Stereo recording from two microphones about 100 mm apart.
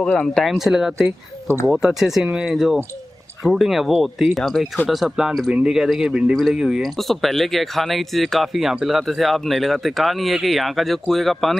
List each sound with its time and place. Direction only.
0.0 s speech: 10° left (ahead or behind)
0.9 s speech: 25° right (ahead or behind)
1.7 s speech: 5° right (ahead or behind)